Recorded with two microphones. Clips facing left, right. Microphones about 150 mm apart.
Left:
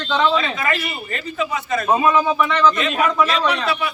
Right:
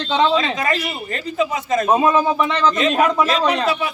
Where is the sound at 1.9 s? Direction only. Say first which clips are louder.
Even; 25° right (ahead or behind).